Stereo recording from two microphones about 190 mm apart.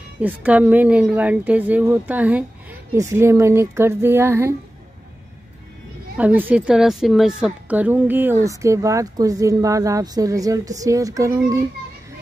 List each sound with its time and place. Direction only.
0.2 s speech: 10° right (ahead or behind)
6.1 s speech: 10° right (ahead or behind)